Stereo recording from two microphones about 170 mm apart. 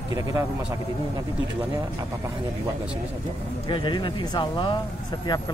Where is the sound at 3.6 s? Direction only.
30° left (ahead or behind).